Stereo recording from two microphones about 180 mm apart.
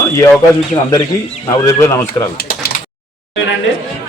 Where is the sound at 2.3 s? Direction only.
60° left (ahead or behind).